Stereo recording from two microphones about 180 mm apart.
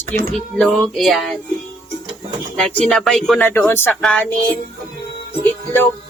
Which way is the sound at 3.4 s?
10° left (ahead or behind).